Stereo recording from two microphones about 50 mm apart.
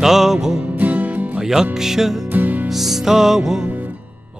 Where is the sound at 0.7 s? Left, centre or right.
Right.